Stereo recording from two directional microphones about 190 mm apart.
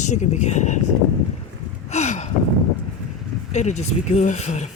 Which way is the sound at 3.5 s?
35° left (ahead or behind).